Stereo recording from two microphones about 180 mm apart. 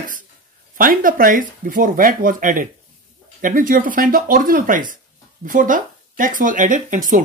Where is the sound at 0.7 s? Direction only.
50° right (ahead or behind).